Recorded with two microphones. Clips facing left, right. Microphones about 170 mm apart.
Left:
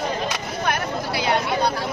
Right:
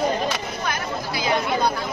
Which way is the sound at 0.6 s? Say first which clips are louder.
Left 4 dB; 70° left (ahead or behind).